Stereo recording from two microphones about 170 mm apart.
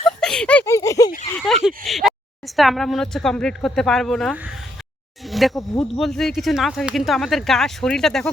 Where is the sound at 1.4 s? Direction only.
Centre (ahead or behind).